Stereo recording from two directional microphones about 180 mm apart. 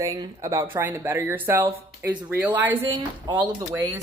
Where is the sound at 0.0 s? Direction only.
20° right (ahead or behind).